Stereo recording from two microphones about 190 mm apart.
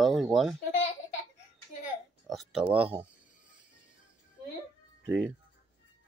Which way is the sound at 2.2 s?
Centre (ahead or behind).